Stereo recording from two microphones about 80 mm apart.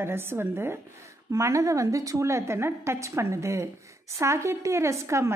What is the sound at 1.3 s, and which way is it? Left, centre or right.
A woman's voice, right.